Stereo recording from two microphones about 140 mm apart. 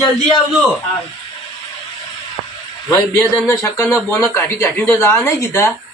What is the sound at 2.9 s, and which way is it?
Speech, 20° left (ahead or behind).